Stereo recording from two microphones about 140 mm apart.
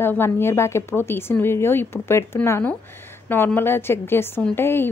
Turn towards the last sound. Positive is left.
turn(degrees=15)  # may be behind; listen again after turning